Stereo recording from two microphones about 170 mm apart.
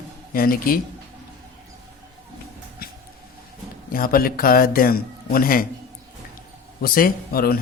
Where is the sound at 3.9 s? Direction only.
60° left (ahead or behind).